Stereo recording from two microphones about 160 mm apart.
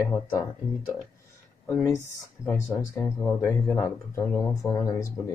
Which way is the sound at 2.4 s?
15° left (ahead or behind).